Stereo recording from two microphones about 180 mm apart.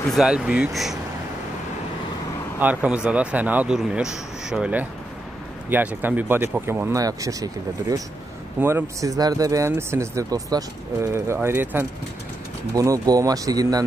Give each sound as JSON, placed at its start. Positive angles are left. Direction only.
{"t": 0.1, "sound": "speech", "side_deg": -5}
{"t": 2.6, "sound": "speech", "side_deg": -10}